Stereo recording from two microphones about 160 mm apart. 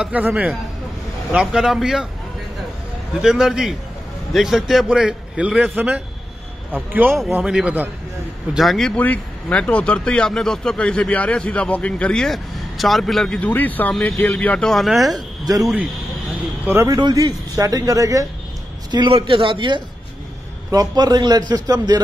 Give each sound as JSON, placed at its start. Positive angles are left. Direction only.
{"t": 0.0, "sound": "a man's voice", "side_deg": -10}
{"t": 3.2, "sound": "a man's voice", "side_deg": -5}
{"t": 8.5, "sound": "speech", "side_deg": 0}
{"t": 15.1, "sound": "speech", "side_deg": -25}
{"t": 15.6, "sound": "a man's voice", "side_deg": -5}
{"t": 16.6, "sound": "a man's voice", "side_deg": -15}